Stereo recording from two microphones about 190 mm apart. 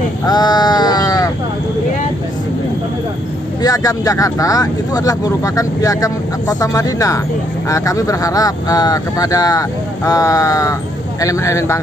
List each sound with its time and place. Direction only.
0.2 s sheep: 20° left (ahead or behind)
3.6 s speech: 20° left (ahead or behind)